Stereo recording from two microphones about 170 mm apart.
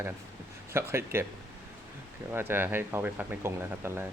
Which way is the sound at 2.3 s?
15° right (ahead or behind).